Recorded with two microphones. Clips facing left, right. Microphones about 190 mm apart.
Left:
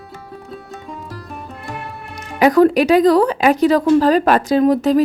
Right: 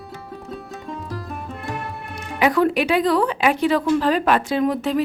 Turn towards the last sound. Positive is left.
turn(degrees=40)  # may be behind; listen again after turning